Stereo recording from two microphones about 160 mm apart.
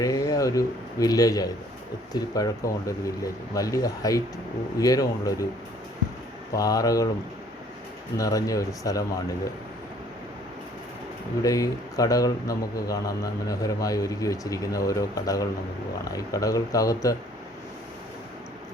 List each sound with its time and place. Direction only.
0.0 s a man's voice: 20° left (ahead or behind)
6.5 s a man's voice: 20° left (ahead or behind)
8.1 s a man's voice: 20° left (ahead or behind)
11.4 s a man's voice: 20° left (ahead or behind)